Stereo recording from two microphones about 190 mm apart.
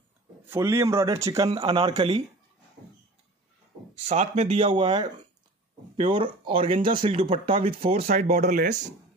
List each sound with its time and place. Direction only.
0.5 s speech: 15° right (ahead or behind)
3.9 s speech: 40° right (ahead or behind)
4.6 s speech: 25° right (ahead or behind); by 8.7 s 45° right (ahead or behind)